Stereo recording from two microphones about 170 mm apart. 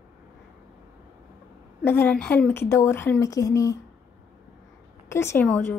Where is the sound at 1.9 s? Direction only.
10° left (ahead or behind).